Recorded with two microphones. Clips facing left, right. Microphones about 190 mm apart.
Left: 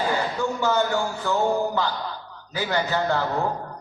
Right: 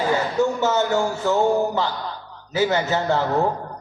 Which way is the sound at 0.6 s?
20° right (ahead or behind).